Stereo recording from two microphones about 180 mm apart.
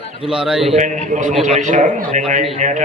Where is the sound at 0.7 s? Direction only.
45° right (ahead or behind).